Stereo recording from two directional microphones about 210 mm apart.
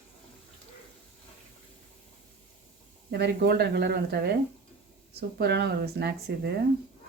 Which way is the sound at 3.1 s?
50° right (ahead or behind).